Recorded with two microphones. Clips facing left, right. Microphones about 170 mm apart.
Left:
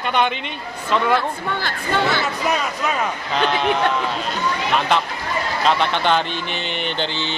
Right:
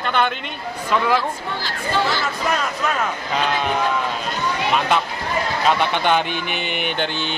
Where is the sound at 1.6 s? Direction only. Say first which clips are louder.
Even; 55° left (ahead or behind).